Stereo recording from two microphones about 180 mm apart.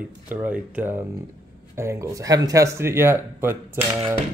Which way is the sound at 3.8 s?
35° right (ahead or behind).